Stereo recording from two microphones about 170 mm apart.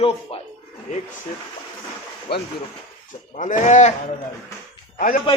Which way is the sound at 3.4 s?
45° left (ahead or behind).